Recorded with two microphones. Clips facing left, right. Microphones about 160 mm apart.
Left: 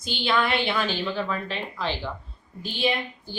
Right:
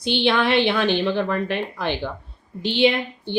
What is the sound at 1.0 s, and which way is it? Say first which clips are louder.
Speech: right 6 dB; 85° right.